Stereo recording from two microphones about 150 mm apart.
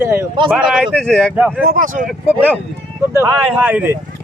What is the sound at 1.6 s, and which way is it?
Speech, 65° right (ahead or behind).